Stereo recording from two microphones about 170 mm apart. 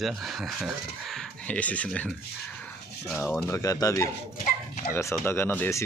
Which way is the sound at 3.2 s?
15° left (ahead or behind).